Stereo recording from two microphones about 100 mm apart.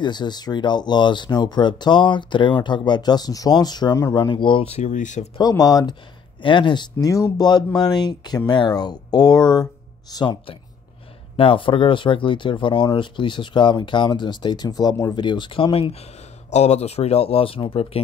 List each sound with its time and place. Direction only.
0.0 s speech: 45° left (ahead or behind)
4.6 s speech: 90° left
5.4 s speech: 40° left (ahead or behind)
6.4 s speech: 50° left (ahead or behind)
7.1 s speech: 35° left (ahead or behind)
11.3 s speech: 60° left (ahead or behind)
16.5 s speech: 90° left; by 18.0 s 75° left (ahead or behind)